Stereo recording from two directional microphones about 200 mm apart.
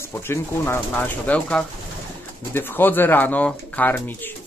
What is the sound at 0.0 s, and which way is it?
Speech, 10° left (ahead or behind).